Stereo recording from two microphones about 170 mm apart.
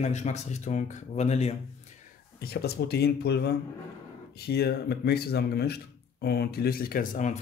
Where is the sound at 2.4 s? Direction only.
65° left (ahead or behind).